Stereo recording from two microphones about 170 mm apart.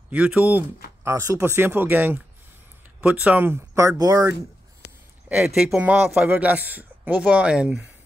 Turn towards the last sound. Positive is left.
turn(degrees=-5)  # may be behind; listen again after turning